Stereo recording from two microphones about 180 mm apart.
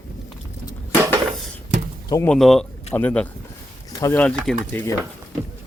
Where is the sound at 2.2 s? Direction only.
5° left (ahead or behind).